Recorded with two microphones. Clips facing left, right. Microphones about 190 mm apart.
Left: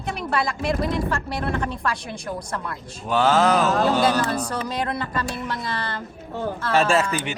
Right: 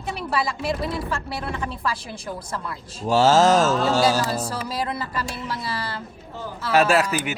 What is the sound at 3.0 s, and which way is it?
Speech, 35° right (ahead or behind).